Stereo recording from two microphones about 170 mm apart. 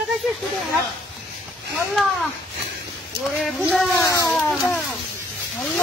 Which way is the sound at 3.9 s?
15° left (ahead or behind).